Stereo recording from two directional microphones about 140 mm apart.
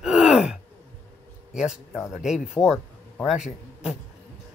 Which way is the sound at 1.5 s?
5° right (ahead or behind).